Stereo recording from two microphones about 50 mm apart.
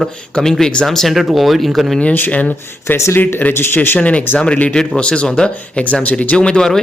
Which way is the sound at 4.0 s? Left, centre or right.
Left.